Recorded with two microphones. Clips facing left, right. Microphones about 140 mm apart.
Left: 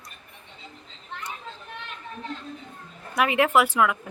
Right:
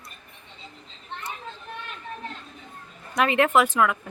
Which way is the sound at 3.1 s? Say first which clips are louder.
Right 1 dB; 10° left (ahead or behind).